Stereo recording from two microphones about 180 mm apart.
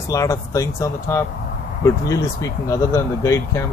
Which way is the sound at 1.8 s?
15° left (ahead or behind).